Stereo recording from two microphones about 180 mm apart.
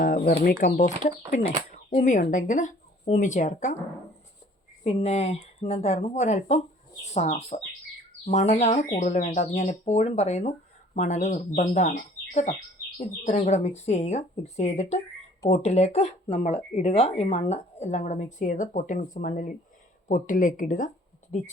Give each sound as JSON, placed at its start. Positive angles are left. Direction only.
{"t": 0.0, "sound": "bird", "side_deg": 50}
{"t": 0.4, "sound": "speech", "side_deg": 50}
{"t": 4.8, "sound": "speech", "side_deg": 40}